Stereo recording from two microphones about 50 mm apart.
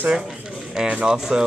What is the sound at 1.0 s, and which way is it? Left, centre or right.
Speech, centre.